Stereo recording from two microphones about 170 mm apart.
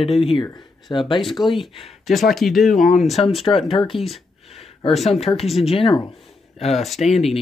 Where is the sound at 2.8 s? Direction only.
50° left (ahead or behind).